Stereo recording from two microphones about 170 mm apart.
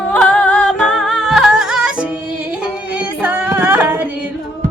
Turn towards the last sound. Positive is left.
turn(degrees=-10)  # may be behind; listen again after turning